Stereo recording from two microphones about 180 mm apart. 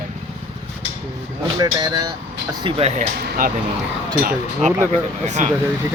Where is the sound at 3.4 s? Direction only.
55° right (ahead or behind).